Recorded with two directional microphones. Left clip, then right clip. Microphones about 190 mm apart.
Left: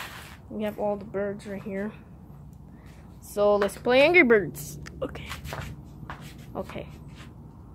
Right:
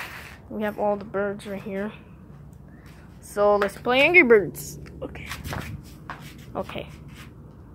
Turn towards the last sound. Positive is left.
turn(degrees=0)  # may be behind; listen again after turning